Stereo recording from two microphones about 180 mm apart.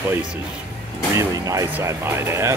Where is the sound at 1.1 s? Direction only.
20° right (ahead or behind).